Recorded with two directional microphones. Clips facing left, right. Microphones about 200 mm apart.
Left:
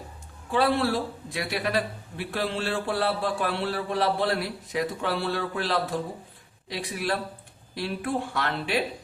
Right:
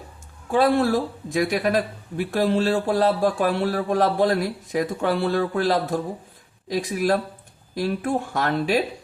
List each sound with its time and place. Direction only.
0.5 s speech: 45° right (ahead or behind)